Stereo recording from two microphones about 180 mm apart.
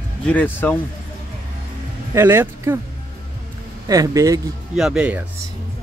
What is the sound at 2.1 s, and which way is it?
Speech, 15° right (ahead or behind).